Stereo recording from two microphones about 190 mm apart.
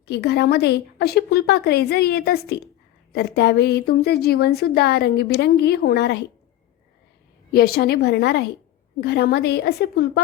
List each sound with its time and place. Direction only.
0.0 s a woman's voice: 60° left (ahead or behind)
7.5 s a woman's voice: 55° left (ahead or behind)